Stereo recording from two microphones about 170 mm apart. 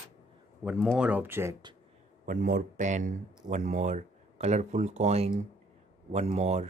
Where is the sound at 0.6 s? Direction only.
5° right (ahead or behind).